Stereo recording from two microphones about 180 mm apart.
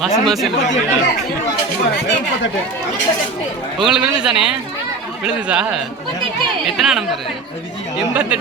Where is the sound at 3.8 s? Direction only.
5° right (ahead or behind).